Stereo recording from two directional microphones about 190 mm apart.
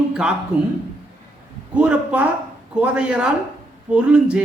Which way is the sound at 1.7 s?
5° right (ahead or behind).